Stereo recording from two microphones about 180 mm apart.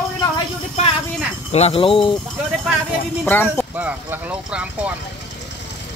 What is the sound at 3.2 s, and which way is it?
Speech, 10° left (ahead or behind).